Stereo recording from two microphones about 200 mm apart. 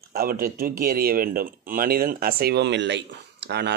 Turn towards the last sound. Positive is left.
turn(degrees=-60)  # may be behind; listen again after turning